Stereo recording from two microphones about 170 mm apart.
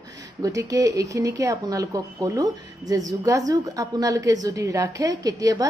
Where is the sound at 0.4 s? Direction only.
20° right (ahead or behind).